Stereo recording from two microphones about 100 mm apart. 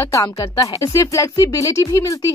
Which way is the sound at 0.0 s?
35° left (ahead or behind).